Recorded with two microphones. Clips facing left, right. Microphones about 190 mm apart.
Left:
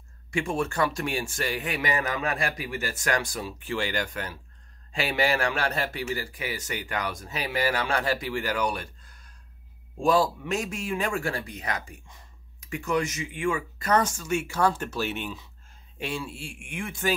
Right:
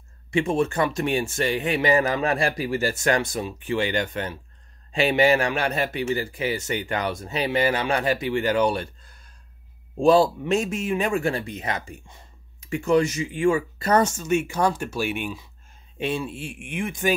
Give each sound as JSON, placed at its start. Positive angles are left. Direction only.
{"t": 0.3, "sound": "a man's voice", "side_deg": -25}